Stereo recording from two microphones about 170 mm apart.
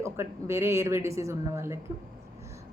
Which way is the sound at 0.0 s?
15° right (ahead or behind).